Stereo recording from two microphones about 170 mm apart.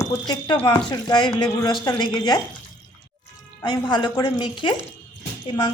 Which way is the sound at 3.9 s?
25° left (ahead or behind).